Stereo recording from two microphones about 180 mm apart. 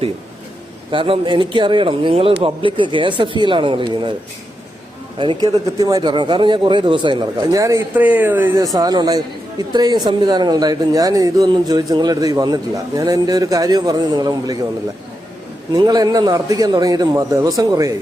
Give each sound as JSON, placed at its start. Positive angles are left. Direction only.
{"t": 0.9, "sound": "a man's voice", "side_deg": -30}
{"t": 5.2, "sound": "a man's voice", "side_deg": -25}
{"t": 15.7, "sound": "a man's voice", "side_deg": -20}